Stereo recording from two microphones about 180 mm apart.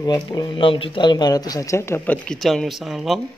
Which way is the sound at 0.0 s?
25° left (ahead or behind).